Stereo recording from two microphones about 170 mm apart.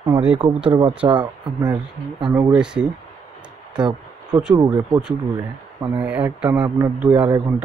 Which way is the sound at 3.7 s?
25° right (ahead or behind).